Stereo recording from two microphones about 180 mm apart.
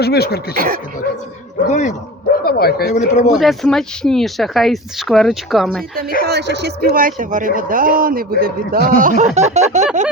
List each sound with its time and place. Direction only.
0.0 s speech: 65° left (ahead or behind)
0.5 s speech: 55° right (ahead or behind)
1.6 s speech: 40° left (ahead or behind)
2.4 s speech: 60° left (ahead or behind)
2.9 s speech: 40° left (ahead or behind)
3.3 s speech: centre (ahead or behind)
6.2 s speech: 70° right (ahead or behind)
9.0 s a sound: 45° right (ahead or behind)